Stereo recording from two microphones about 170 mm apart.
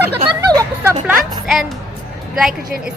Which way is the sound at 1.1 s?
Centre (ahead or behind).